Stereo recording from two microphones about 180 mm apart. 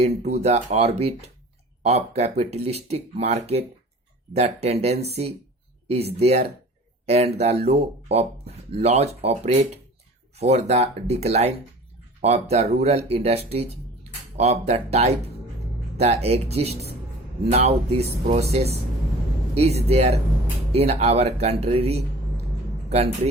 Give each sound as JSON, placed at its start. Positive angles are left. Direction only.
{"t": 0.3, "sound": "speech", "side_deg": -35}